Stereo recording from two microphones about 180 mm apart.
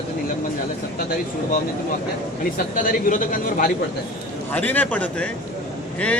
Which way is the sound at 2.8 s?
50° left (ahead or behind).